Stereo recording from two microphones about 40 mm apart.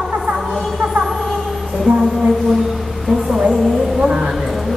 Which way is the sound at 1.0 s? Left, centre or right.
Centre.